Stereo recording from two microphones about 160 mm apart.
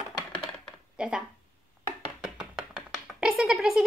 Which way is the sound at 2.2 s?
5° right (ahead or behind).